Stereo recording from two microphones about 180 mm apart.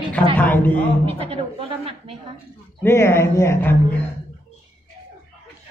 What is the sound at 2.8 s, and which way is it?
Speech, 15° left (ahead or behind).